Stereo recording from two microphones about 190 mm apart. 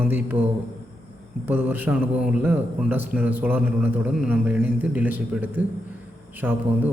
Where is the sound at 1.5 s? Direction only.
10° right (ahead or behind).